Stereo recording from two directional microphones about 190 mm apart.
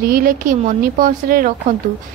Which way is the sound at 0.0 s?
50° right (ahead or behind).